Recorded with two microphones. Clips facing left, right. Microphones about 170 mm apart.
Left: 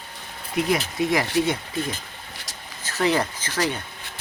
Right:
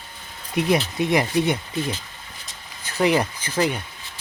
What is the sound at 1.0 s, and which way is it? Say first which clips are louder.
Speech: right 2 dB; 20° right (ahead or behind).